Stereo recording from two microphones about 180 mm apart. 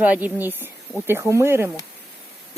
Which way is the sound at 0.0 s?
10° right (ahead or behind).